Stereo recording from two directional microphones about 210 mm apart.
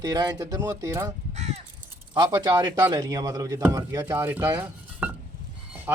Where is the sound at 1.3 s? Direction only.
30° right (ahead or behind).